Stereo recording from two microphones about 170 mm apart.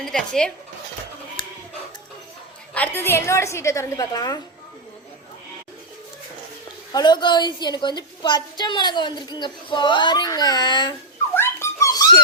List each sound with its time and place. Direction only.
0.0 s speech: 5° left (ahead or behind)
1.4 s music: 30° left (ahead or behind)
2.7 s a woman's voice: 10° left (ahead or behind)
6.9 s a woman's voice: 25° left (ahead or behind)
11.3 s a sound: 15° left (ahead or behind)